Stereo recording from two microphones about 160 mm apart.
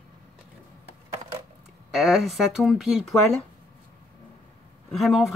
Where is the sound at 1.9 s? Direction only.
Centre (ahead or behind).